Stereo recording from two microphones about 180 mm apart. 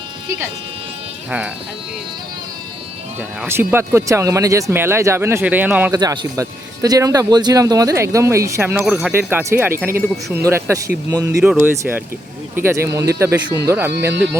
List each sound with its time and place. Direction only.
3.2 s speech: 10° right (ahead or behind)
5.9 s speech: 20° right (ahead or behind); by 9.1 s 5° right (ahead or behind)
9.1 s speech: 15° right (ahead or behind)